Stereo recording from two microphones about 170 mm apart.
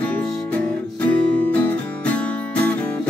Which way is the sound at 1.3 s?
5° left (ahead or behind).